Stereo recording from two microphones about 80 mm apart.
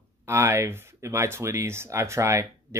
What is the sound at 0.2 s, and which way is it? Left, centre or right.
Speech, right.